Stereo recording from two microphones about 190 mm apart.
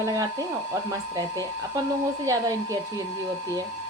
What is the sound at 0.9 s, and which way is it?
A woman's voice, 20° right (ahead or behind).